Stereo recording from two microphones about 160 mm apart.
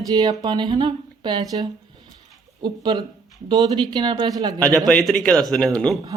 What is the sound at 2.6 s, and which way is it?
Speech, 25° right (ahead or behind).